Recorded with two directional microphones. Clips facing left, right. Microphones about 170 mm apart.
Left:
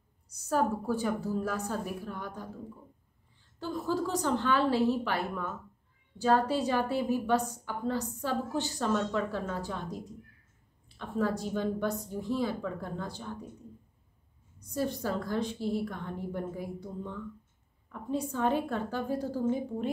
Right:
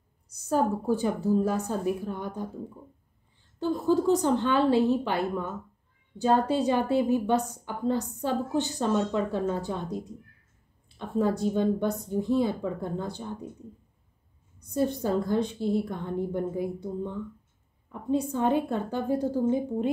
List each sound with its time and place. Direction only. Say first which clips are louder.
0.5 s a woman's voice: right 4 dB; 25° right (ahead or behind)
3.5 s a woman's voice: right 7 dB; 25° right (ahead or behind)
11.0 s a woman's voice: right 5 dB; 25° right (ahead or behind)
14.7 s a woman's voice: right 5 dB; 25° right (ahead or behind)
18.1 s a woman's voice: right 4 dB; 20° right (ahead or behind)